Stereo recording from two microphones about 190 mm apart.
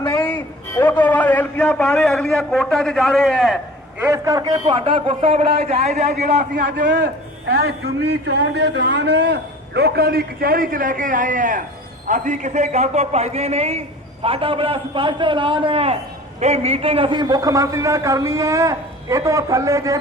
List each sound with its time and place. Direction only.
0.0 s a man's voice: 10° left (ahead or behind)
4.0 s a man's voice: 15° right (ahead or behind); by 6.3 s 35° right (ahead or behind)
7.5 s a man's voice: 60° right (ahead or behind); by 20.0 s 15° right (ahead or behind)